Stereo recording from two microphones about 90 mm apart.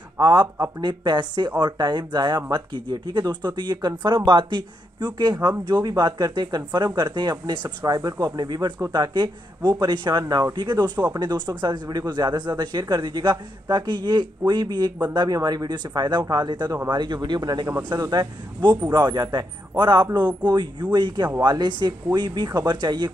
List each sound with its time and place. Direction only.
0.2 s speech: 50° right (ahead or behind)
17.9 s speech: 40° right (ahead or behind)